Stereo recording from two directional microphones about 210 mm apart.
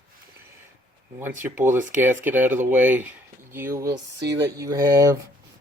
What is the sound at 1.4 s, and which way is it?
Speech, 10° right (ahead or behind).